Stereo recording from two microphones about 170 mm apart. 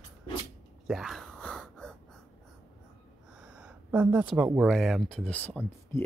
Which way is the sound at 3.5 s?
5° right (ahead or behind).